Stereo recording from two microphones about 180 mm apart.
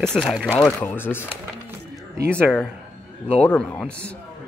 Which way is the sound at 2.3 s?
5° left (ahead or behind).